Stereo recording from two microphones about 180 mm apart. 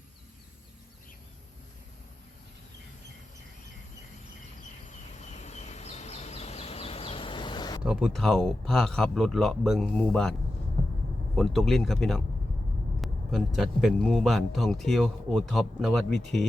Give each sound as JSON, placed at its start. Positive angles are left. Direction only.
{"t": 4.9, "sound": "a sound", "side_deg": 40}
{"t": 7.9, "sound": "speech", "side_deg": -5}
{"t": 11.3, "sound": "speech", "side_deg": 0}